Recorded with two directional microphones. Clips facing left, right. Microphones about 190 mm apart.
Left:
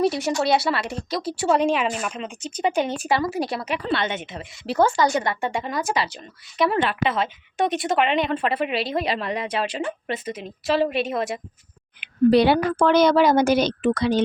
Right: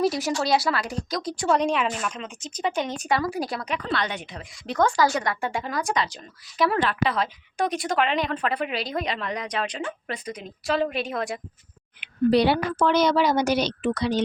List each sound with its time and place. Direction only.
0.0 s a woman's voice: centre (ahead or behind)
3.8 s speech: 25° left (ahead or behind)
4.6 s a woman's voice: 5° left (ahead or behind)
7.8 s speech: 25° left (ahead or behind)
8.5 s a woman's voice: 5° left (ahead or behind)
9.8 s speech: 25° left (ahead or behind)
10.3 s a woman's voice: 5° left (ahead or behind)
12.3 s a woman's voice: 55° left (ahead or behind)